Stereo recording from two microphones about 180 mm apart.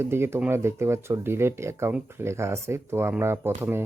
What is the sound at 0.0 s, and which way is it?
Speech, 15° right (ahead or behind).